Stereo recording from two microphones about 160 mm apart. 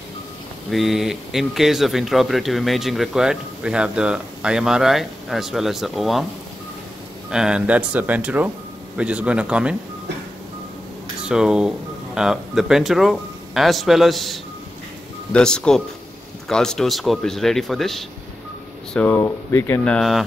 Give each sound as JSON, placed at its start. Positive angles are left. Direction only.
{"t": 0.7, "sound": "speech", "side_deg": 0}
{"t": 7.2, "sound": "speech", "side_deg": -5}
{"t": 11.2, "sound": "speech", "side_deg": -5}
{"t": 18.9, "sound": "speech", "side_deg": 15}
{"t": 19.8, "sound": "speech", "side_deg": 5}